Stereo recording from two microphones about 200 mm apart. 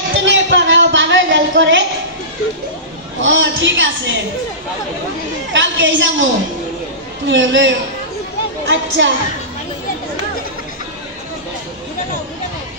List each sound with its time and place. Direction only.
0.1 s a sound: 65° right (ahead or behind)
3.2 s a woman's voice: 65° right (ahead or behind)
5.5 s a woman's voice: 65° right (ahead or behind)
7.2 s a man's voice: 65° right (ahead or behind)